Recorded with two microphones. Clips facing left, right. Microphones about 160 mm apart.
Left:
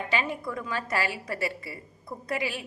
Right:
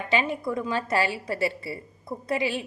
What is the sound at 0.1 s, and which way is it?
A woman's voice, 20° right (ahead or behind).